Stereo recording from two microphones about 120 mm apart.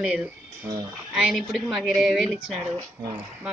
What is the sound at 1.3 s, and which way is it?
Speech, 5° right (ahead or behind).